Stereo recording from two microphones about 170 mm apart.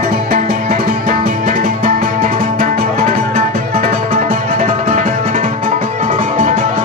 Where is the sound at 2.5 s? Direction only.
60° right (ahead or behind).